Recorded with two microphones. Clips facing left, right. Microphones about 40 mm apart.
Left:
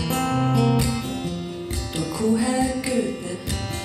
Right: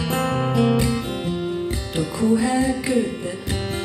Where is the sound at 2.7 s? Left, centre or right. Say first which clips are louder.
Right 3 dB; right.